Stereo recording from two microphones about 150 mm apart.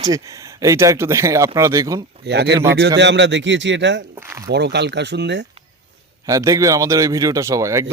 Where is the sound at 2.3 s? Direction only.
90° right.